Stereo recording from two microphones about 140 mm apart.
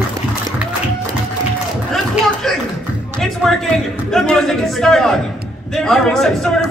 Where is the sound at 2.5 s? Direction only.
Centre (ahead or behind).